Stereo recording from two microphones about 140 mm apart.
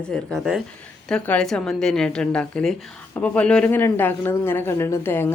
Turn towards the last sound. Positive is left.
turn(degrees=15)  # may be behind; listen again after turning